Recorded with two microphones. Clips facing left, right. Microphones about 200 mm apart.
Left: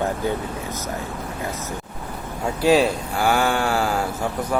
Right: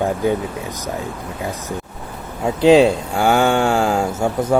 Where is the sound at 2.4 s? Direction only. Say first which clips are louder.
Right 6 dB; 20° right (ahead or behind).